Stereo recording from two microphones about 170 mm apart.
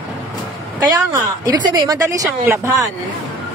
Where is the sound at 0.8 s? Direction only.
20° right (ahead or behind).